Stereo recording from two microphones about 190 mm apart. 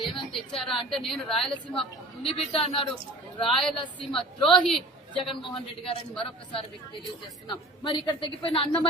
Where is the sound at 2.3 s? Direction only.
30° left (ahead or behind).